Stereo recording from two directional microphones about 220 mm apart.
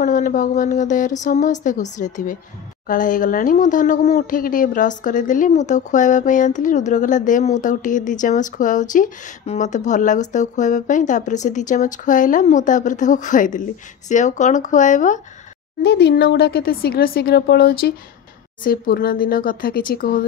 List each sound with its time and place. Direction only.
0.0 s speech: 35° left (ahead or behind)
15.8 s speech: 50° left (ahead or behind)